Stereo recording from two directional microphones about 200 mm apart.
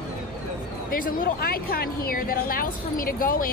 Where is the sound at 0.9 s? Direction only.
45° left (ahead or behind).